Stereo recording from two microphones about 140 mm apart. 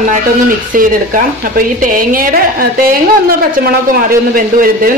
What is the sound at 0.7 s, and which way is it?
Speech, 85° right.